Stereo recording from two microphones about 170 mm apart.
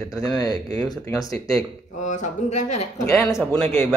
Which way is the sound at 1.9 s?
45° left (ahead or behind).